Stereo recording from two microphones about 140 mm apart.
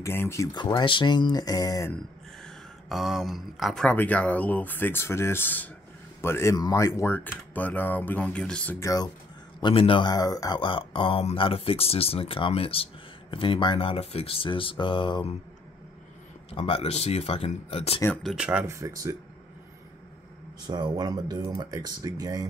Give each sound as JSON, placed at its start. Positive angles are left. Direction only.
{"t": 0.0, "sound": "speech", "side_deg": 20}
{"t": 0.6, "sound": "speech", "side_deg": 30}
{"t": 2.4, "sound": "speech", "side_deg": 0}
{"t": 8.7, "sound": "speech", "side_deg": 25}
{"t": 9.6, "sound": "speech", "side_deg": 40}
{"t": 16.4, "sound": "speech", "side_deg": 40}
{"t": 18.2, "sound": "speech", "side_deg": -5}
{"t": 18.8, "sound": "speech", "side_deg": -25}
{"t": 20.6, "sound": "speech", "side_deg": -30}